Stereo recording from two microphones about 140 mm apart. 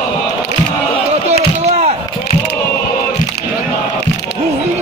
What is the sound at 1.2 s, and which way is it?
Chop, 50° right (ahead or behind).